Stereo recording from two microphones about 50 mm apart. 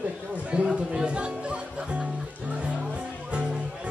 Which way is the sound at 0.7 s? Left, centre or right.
Centre.